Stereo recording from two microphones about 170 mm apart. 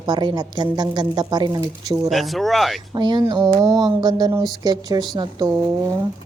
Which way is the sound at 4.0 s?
25° right (ahead or behind).